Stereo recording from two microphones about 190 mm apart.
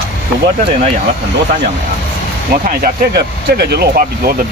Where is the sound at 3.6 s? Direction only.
60° right (ahead or behind).